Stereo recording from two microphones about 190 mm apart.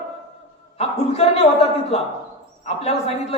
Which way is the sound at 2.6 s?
35° left (ahead or behind).